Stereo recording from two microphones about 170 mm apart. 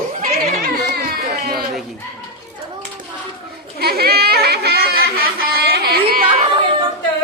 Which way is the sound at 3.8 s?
65° right (ahead or behind).